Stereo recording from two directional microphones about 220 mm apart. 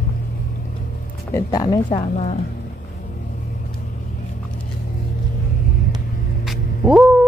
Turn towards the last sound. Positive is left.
turn(degrees=-5)  # may be behind; listen again after turning